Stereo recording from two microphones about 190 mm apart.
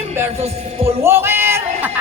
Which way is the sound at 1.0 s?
15° right (ahead or behind).